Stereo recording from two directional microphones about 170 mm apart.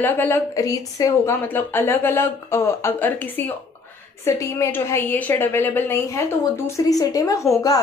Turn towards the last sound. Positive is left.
turn(degrees=20)  # may be behind; listen again after turning